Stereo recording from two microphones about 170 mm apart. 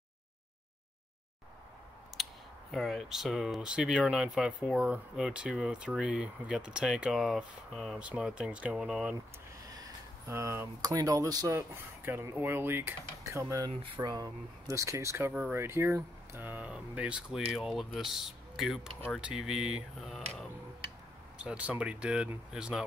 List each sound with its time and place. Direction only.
2.2 s a sound: centre (ahead or behind)
2.7 s speech: centre (ahead or behind)
10.2 s speech: 15° right (ahead or behind)